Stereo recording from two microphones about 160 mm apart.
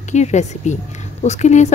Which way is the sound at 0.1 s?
45° left (ahead or behind).